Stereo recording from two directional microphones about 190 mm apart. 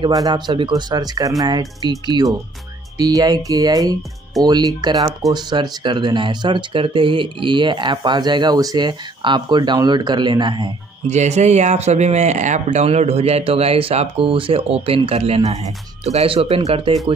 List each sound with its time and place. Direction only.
0.0 s speech: 20° right (ahead or behind)
11.1 s speech: 35° right (ahead or behind)